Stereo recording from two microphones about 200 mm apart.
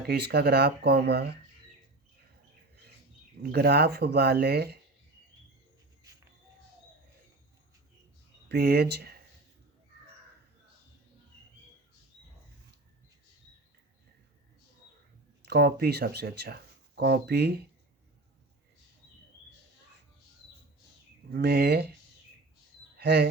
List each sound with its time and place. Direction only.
0.0 s speech: 55° right (ahead or behind)
3.4 s speech: 55° right (ahead or behind)
8.4 s speech: 55° right (ahead or behind)
15.4 s speech: 55° right (ahead or behind)
21.3 s speech: 55° right (ahead or behind)
23.0 s speech: 55° right (ahead or behind)